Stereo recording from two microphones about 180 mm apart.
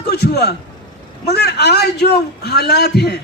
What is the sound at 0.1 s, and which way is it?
A man's voice, 65° left (ahead or behind).